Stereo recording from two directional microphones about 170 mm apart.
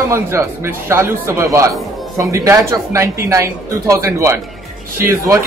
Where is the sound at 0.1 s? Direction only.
15° right (ahead or behind).